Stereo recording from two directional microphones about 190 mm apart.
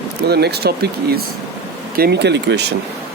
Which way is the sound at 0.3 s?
60° right (ahead or behind).